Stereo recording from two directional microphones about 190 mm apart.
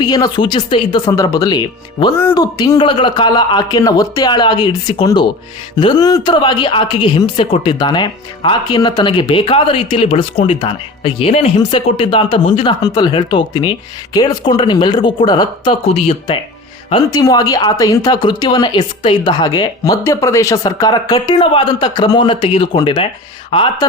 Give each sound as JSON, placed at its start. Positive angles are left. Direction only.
{"t": 0.0, "sound": "a woman's voice", "side_deg": 20}
{"t": 16.9, "sound": "a woman's voice", "side_deg": 20}